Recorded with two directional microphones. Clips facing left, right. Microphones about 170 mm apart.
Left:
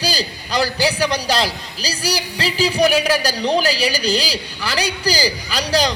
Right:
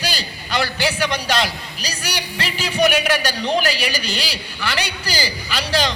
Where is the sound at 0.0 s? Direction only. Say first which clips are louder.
Left 4 dB; 35° left (ahead or behind).